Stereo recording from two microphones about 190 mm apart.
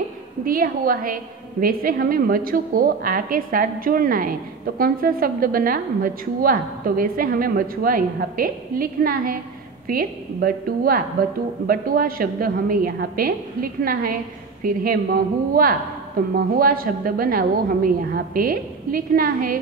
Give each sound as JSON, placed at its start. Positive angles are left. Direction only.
{"t": 0.5, "sound": "a woman's voice", "side_deg": -50}